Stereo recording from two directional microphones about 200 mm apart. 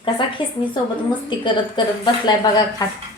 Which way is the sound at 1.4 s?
20° left (ahead or behind).